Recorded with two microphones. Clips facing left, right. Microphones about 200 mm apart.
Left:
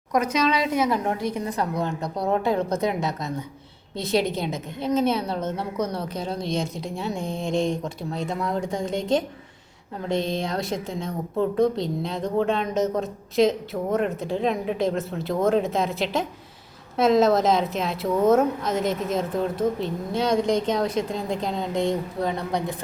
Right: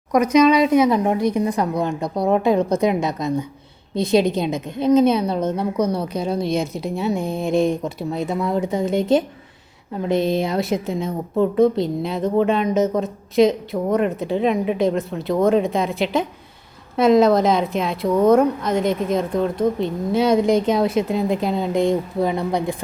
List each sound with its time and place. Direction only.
0.1 s a woman's voice: 15° right (ahead or behind); by 19.9 s 5° left (ahead or behind)
20.1 s a woman's voice: 10° right (ahead or behind)